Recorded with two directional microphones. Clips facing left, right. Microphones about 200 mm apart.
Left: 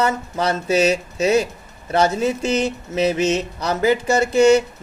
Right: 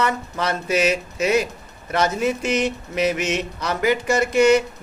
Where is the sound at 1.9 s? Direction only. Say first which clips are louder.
Left 3 dB; 30° left (ahead or behind).